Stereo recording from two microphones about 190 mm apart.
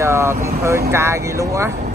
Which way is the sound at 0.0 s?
15° right (ahead or behind).